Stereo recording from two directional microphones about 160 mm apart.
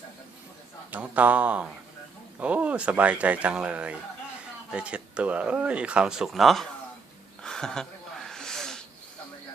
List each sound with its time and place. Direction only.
0.9 s speech: 10° right (ahead or behind)
7.4 s snort: 5° left (ahead or behind)